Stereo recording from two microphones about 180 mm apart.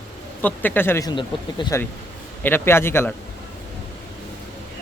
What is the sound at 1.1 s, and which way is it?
Speech, 30° left (ahead or behind).